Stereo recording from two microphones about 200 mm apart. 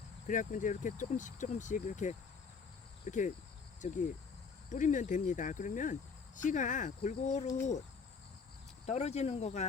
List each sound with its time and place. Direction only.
0.3 s speech: 40° left (ahead or behind)
8.9 s speech: 35° left (ahead or behind)